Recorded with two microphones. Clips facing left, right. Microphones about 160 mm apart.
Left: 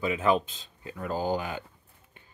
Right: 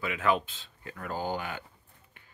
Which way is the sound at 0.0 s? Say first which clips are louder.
Left 3 dB; 20° left (ahead or behind).